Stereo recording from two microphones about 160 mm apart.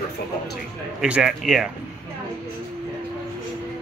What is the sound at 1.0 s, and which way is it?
Speech, 5° right (ahead or behind).